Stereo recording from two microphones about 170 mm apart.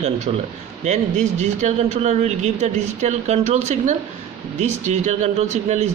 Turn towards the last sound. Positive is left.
turn(degrees=-45)  # may be behind; listen again after turning